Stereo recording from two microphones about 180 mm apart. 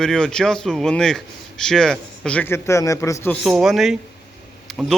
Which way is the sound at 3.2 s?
Centre (ahead or behind).